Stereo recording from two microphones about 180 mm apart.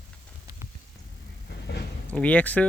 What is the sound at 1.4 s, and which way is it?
Vehicle, 65° left (ahead or behind).